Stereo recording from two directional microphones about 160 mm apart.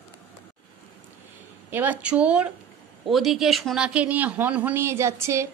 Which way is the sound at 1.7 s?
10° right (ahead or behind).